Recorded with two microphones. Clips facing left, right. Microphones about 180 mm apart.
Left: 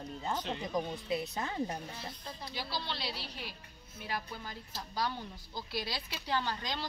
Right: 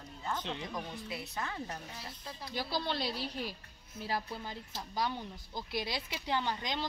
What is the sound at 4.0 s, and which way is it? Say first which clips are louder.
Speech: right 3 dB; 30° right (ahead or behind).